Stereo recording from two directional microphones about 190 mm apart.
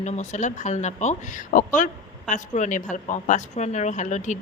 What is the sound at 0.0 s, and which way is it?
Speech, 35° left (ahead or behind).